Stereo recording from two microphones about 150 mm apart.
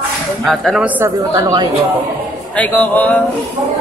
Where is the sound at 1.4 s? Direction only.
30° right (ahead or behind).